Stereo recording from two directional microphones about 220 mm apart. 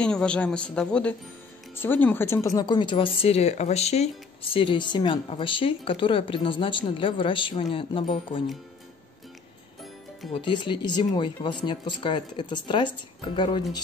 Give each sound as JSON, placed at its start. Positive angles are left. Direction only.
{"t": 0.0, "sound": "speech", "side_deg": 5}
{"t": 10.3, "sound": "speech", "side_deg": 20}